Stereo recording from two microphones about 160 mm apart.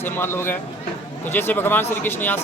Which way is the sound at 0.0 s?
15° left (ahead or behind).